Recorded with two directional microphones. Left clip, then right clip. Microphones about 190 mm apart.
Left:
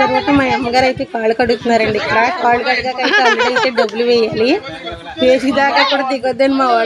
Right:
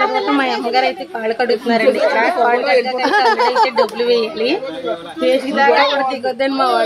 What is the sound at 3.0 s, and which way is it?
Speech, 25° left (ahead or behind).